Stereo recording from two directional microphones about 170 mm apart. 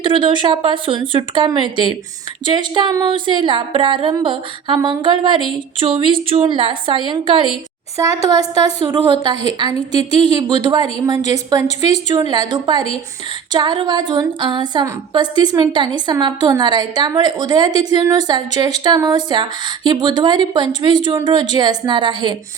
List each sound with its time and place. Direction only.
0.0 s speech: 30° right (ahead or behind)